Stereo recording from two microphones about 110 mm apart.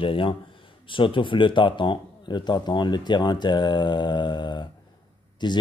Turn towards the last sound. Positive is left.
turn(degrees=45)  # may be behind; listen again after turning